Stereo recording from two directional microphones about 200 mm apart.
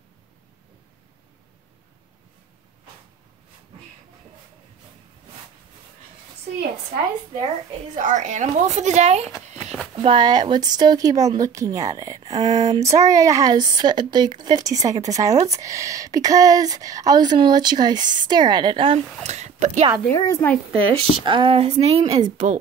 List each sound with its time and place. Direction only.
7.9 s speech: 40° right (ahead or behind)
10.0 s speech: 25° right (ahead or behind)
20.1 s a woman's voice: 15° left (ahead or behind)
20.7 s speech: 25° right (ahead or behind)